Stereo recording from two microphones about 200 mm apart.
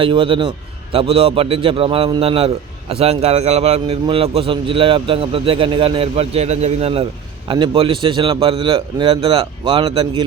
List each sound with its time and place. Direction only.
0.0 s a man's voice: 25° right (ahead or behind)